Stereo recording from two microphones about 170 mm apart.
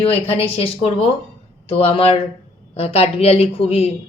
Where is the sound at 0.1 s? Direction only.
35° left (ahead or behind).